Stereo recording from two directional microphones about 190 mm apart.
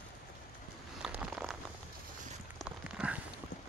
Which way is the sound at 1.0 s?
5° right (ahead or behind).